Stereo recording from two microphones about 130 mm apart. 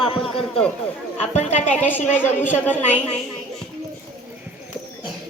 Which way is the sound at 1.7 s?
15° left (ahead or behind).